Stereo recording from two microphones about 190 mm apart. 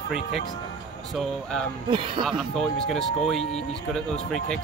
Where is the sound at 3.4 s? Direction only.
35° left (ahead or behind).